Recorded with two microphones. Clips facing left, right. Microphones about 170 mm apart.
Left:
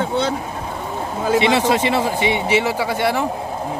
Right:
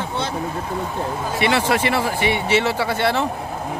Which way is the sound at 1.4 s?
20° left (ahead or behind).